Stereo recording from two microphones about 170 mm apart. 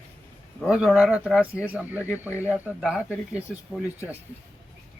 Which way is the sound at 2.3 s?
15° left (ahead or behind).